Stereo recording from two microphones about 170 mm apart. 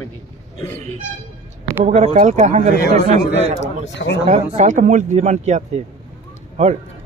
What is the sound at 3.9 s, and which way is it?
Speech, 90° left.